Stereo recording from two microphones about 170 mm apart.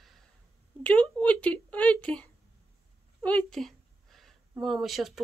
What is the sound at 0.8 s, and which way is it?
Speech, 10° left (ahead or behind).